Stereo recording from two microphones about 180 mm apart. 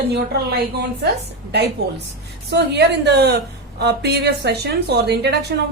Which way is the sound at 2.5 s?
70° right (ahead or behind).